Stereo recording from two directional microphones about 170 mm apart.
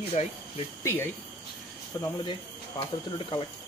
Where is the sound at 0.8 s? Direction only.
15° left (ahead or behind).